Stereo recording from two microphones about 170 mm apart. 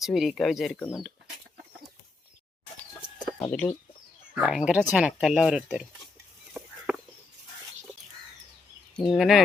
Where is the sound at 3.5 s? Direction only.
10° left (ahead or behind).